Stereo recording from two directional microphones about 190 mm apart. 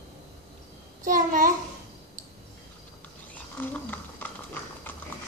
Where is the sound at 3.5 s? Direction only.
10° left (ahead or behind).